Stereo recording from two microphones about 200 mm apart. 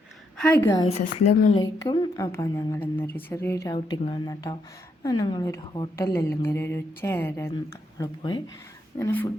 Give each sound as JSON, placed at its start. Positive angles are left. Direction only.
{"t": 0.3, "sound": "a woman's voice", "side_deg": 10}
{"t": 0.9, "sound": "a woman's voice", "side_deg": 35}
{"t": 1.5, "sound": "a woman's voice", "side_deg": 20}
{"t": 3.8, "sound": "a woman's voice", "side_deg": 25}